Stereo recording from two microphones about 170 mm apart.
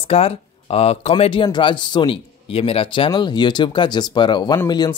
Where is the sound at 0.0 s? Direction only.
35° left (ahead or behind).